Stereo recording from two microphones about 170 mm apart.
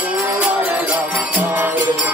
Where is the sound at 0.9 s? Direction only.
10° right (ahead or behind).